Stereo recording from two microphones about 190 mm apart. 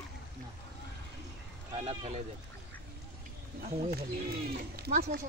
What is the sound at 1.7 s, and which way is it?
Speech, 30° right (ahead or behind).